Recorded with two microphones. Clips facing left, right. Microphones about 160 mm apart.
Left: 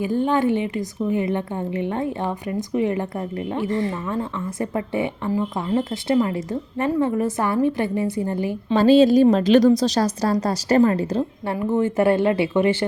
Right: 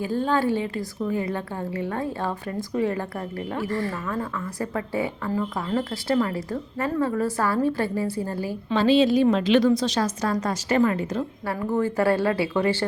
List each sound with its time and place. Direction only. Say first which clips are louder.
0.0 s a woman's voice: left 3 dB; 15° left (ahead or behind)
8.7 s a woman's voice: left 5 dB; 45° left (ahead or behind); by 12.7 s 20° left (ahead or behind)